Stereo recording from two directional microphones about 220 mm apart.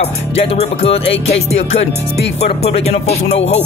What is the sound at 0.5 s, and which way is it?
Music, 25° left (ahead or behind).